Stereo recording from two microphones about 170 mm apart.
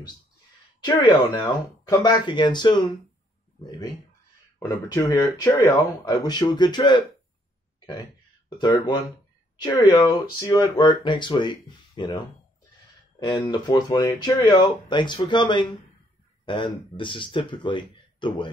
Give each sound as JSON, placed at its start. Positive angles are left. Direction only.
{"t": 0.7, "sound": "speech", "side_deg": 25}
{"t": 8.5, "sound": "speech", "side_deg": 25}